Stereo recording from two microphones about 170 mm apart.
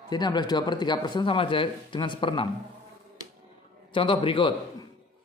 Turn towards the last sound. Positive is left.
turn(degrees=30)  # may be behind; listen again after turning